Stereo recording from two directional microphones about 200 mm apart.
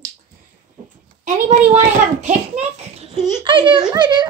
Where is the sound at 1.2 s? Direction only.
35° right (ahead or behind).